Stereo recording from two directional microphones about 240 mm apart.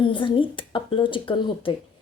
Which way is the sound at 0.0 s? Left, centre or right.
Left.